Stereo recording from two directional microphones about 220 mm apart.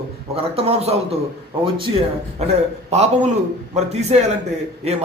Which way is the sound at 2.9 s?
30° right (ahead or behind).